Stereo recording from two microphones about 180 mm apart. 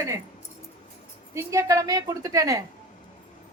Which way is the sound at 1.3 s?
15° right (ahead or behind).